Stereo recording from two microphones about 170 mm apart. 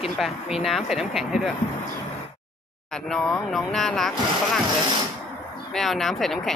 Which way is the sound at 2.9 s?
5° left (ahead or behind).